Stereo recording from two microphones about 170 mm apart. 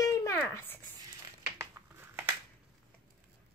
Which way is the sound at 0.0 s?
15° left (ahead or behind).